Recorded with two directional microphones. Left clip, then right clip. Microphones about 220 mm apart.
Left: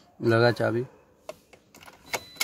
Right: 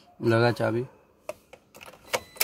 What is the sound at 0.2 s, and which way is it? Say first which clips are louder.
Speech: left 1 dB; 5° left (ahead or behind).